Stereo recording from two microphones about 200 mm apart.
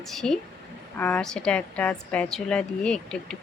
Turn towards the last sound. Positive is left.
turn(degrees=5)  # may be behind; listen again after turning